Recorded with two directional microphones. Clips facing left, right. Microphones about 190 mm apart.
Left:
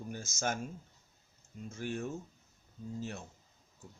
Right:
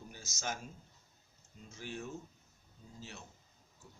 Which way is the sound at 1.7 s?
50° left (ahead or behind).